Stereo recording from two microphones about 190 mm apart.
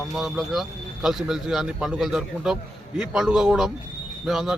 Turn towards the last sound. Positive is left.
turn(degrees=0)  # may be behind; listen again after turning